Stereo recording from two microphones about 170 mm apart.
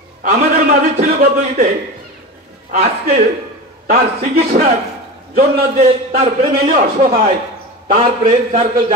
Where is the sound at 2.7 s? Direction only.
50° right (ahead or behind).